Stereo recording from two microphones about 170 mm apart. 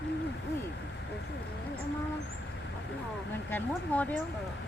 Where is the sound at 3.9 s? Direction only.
10° left (ahead or behind).